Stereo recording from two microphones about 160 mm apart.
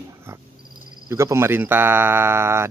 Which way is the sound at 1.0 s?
20° right (ahead or behind).